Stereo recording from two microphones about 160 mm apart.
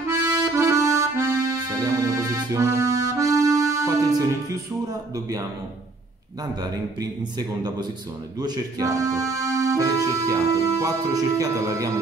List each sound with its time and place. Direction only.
0.1 s accordion: 20° right (ahead or behind)
3.2 s music: 20° right (ahead or behind)
6.6 s music: 25° right (ahead or behind)